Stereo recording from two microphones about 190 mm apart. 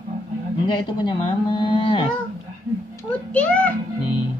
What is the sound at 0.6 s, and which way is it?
Speech, 25° left (ahead or behind).